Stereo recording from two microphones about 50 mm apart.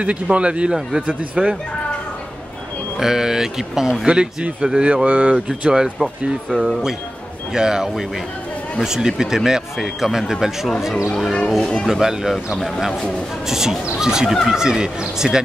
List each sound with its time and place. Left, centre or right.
0.0 s speech: right
3.0 s speech: centre; by 5.4 s right
5.6 s speech: centre
11.6 s speech: centre
11.9 s speech: centre
13.5 s speech: centre